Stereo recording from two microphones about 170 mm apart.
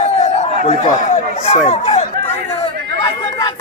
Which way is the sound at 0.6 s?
40° left (ahead or behind).